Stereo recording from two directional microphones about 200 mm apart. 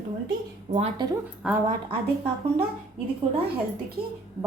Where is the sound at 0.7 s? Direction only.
30° right (ahead or behind).